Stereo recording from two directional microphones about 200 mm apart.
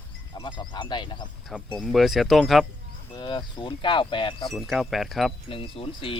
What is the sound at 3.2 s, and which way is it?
Speech, 20° left (ahead or behind).